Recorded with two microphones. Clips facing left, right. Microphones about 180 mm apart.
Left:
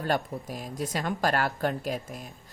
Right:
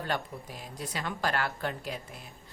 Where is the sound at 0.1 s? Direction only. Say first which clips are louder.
Left 7 dB; 45° left (ahead or behind).